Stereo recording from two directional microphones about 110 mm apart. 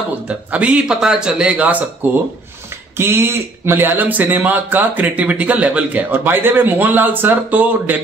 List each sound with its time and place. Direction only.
0.5 s speech: 10° right (ahead or behind)
3.0 s speech: 20° right (ahead or behind)